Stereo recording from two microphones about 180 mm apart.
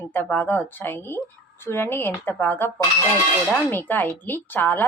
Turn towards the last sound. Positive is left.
turn(degrees=10)  # may be behind; listen again after turning